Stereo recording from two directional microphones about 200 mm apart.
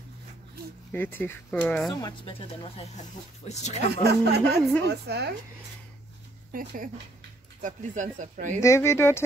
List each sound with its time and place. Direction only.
0.9 s speech: 10° left (ahead or behind)
1.9 s speech: 20° left (ahead or behind)
3.8 s speech: 55° right (ahead or behind)
6.5 s speech: 45° right (ahead or behind)
8.5 s speech: 15° left (ahead or behind)